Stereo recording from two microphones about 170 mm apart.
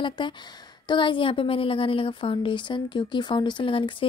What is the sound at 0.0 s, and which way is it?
A woman's voice, 25° left (ahead or behind).